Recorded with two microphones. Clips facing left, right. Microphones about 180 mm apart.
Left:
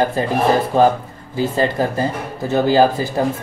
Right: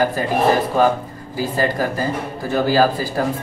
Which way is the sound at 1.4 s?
25° left (ahead or behind).